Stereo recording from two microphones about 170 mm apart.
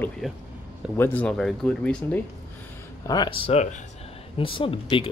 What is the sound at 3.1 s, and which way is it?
Speech, 25° left (ahead or behind).